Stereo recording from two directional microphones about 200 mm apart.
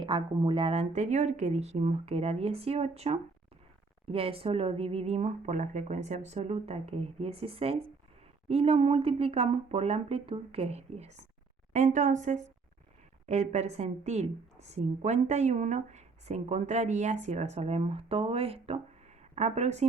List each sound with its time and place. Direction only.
0.0 s a woman's voice: 25° right (ahead or behind)